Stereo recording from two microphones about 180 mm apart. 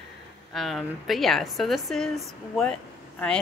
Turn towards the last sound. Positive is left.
turn(degrees=5)  # may be behind; listen again after turning